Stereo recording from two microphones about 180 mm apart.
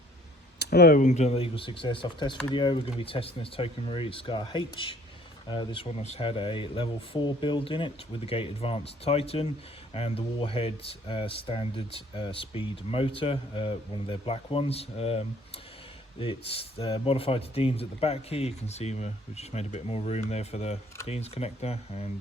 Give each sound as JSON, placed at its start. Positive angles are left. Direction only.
{"t": 0.6, "sound": "speech", "side_deg": 60}